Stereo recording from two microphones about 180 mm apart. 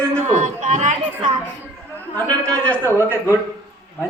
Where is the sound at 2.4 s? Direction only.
5° left (ahead or behind).